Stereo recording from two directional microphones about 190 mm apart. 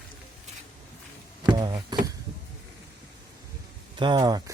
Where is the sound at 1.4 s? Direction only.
20° right (ahead or behind).